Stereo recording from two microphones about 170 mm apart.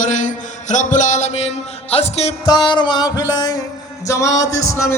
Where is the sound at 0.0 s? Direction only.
45° left (ahead or behind).